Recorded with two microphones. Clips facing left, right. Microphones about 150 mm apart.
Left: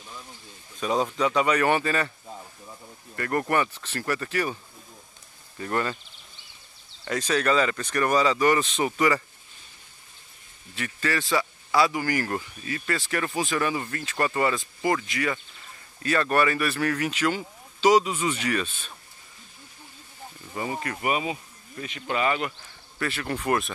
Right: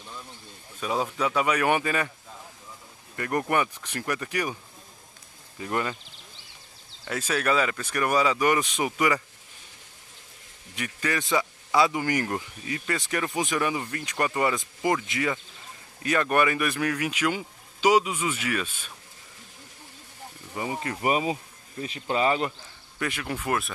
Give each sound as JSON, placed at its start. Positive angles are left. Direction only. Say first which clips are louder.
{"t": 0.7, "sound": "speech", "louder": "left 3 dB", "side_deg": -5}
{"t": 3.2, "sound": "speech", "louder": "left 1 dB", "side_deg": -15}
{"t": 5.6, "sound": "speech", "louder": "left 1 dB", "side_deg": -10}
{"t": 7.1, "sound": "speech", "louder": "left 2 dB", "side_deg": -10}
{"t": 10.7, "sound": "a man's voice", "louder": "left 1 dB", "side_deg": -15}
{"t": 20.5, "sound": "speech", "louder": "even", "side_deg": -15}
{"t": 21.0, "sound": "speech", "louder": "right 3 dB", "side_deg": -35}
{"t": 22.9, "sound": "speech", "louder": "left 1 dB", "side_deg": -15}